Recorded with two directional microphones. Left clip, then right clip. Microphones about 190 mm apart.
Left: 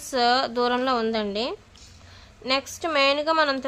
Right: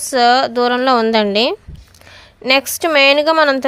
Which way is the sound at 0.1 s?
30° right (ahead or behind).